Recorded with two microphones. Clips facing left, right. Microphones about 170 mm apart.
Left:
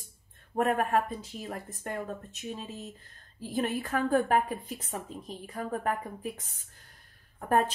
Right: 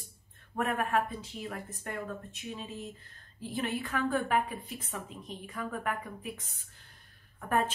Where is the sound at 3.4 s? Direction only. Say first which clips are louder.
Left 3 dB; 40° left (ahead or behind).